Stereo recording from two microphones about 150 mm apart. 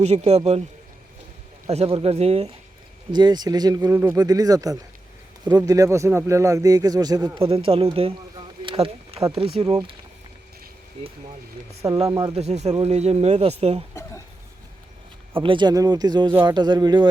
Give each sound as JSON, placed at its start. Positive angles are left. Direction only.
{"t": 0.0, "sound": "speech", "side_deg": -45}
{"t": 1.6, "sound": "speech", "side_deg": -45}
{"t": 3.1, "sound": "speech", "side_deg": -30}
{"t": 7.4, "sound": "speech", "side_deg": -40}
{"t": 7.9, "sound": "a sound", "side_deg": -35}
{"t": 9.6, "sound": "speech", "side_deg": -35}
{"t": 12.0, "sound": "speech", "side_deg": -25}
{"t": 12.3, "sound": "speech", "side_deg": -45}
{"t": 15.4, "sound": "speech", "side_deg": -30}
{"t": 16.3, "sound": "speech", "side_deg": -15}
{"t": 16.6, "sound": "speech", "side_deg": -30}